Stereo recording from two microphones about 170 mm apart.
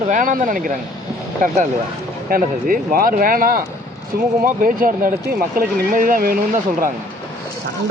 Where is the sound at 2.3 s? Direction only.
55° right (ahead or behind).